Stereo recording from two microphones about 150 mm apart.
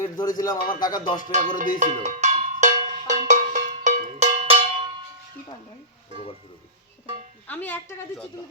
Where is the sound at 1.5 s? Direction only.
55° right (ahead or behind).